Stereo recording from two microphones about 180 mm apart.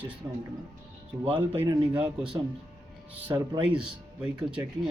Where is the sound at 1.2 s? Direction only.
30° right (ahead or behind).